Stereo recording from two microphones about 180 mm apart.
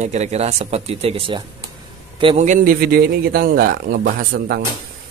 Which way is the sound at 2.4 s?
45° right (ahead or behind).